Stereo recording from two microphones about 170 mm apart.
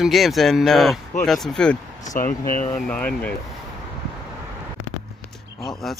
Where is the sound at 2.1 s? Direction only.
50° left (ahead or behind).